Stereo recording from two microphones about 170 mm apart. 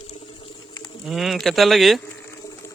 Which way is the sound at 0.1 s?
30° left (ahead or behind).